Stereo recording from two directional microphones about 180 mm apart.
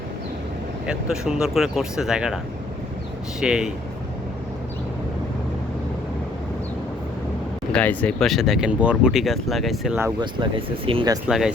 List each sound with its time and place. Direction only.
0.9 s speech: 5° right (ahead or behind)
3.4 s speech: 5° right (ahead or behind)
7.7 s speech: 5° left (ahead or behind)
10.2 s speech: 30° right (ahead or behind)
11.3 s speech: centre (ahead or behind)